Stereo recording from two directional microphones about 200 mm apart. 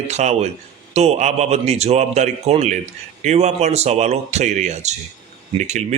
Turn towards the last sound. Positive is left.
turn(degrees=-35)  # may be behind; listen again after turning